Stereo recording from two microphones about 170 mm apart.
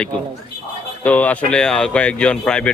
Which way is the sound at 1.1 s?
10° left (ahead or behind).